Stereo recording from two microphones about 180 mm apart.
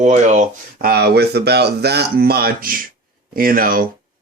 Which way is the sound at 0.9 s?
65° right (ahead or behind).